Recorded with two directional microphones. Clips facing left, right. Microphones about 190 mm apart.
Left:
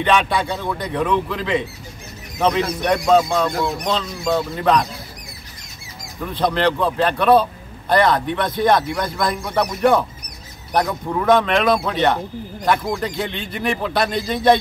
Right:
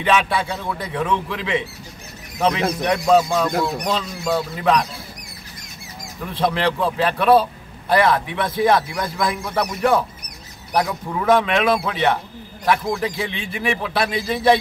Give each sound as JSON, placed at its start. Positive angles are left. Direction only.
{"t": 0.0, "sound": "speech", "side_deg": -5}
{"t": 6.4, "sound": "speech", "side_deg": -5}